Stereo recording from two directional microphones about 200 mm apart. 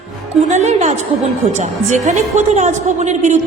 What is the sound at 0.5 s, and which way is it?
A woman's voice, 35° right (ahead or behind).